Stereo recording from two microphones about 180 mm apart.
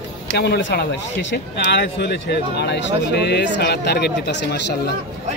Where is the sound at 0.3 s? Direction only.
70° left (ahead or behind).